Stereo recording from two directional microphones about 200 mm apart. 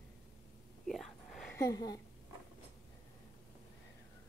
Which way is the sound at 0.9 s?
Centre (ahead or behind).